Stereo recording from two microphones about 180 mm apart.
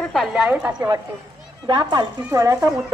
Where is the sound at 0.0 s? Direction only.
Centre (ahead or behind).